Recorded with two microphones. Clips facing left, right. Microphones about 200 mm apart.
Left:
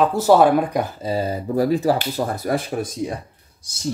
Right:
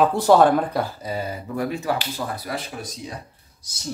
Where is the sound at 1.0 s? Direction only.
30° left (ahead or behind); by 3.1 s 50° left (ahead or behind).